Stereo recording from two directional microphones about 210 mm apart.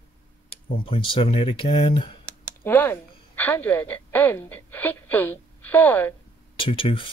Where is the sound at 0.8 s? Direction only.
25° left (ahead or behind).